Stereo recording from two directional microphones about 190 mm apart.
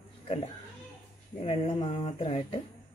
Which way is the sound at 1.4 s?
30° left (ahead or behind).